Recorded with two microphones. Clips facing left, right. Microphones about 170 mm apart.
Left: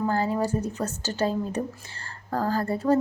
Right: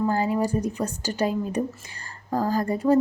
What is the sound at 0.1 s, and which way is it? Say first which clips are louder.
A woman's voice: right 2 dB; 15° right (ahead or behind).